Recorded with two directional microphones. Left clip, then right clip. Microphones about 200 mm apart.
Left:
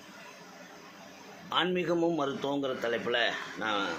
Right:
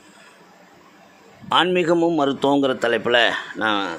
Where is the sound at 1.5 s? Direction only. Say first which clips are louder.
Right 12 dB; 55° right (ahead or behind).